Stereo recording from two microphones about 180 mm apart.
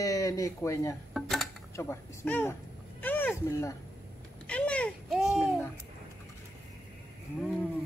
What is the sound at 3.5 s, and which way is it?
Speech, 15° left (ahead or behind).